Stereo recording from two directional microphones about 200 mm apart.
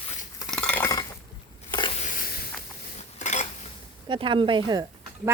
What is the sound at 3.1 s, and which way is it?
Dishes, 35° left (ahead or behind).